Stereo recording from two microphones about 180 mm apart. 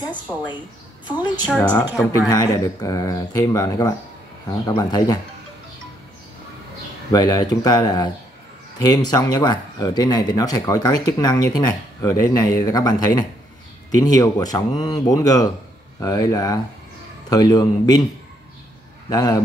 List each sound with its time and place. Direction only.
1.6 s speech: 25° left (ahead or behind)
7.1 s speech: 20° left (ahead or behind)
19.0 s speech: 20° left (ahead or behind)